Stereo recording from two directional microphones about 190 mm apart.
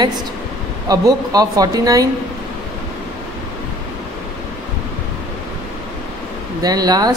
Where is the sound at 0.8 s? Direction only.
20° right (ahead or behind).